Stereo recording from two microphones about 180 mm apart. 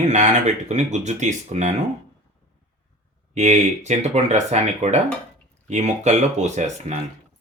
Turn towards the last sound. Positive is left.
turn(degrees=-40)  # may be behind; listen again after turning